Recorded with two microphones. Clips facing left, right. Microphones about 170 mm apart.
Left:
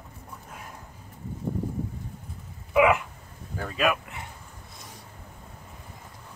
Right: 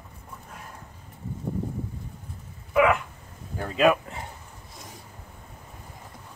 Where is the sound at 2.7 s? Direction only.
5° left (ahead or behind).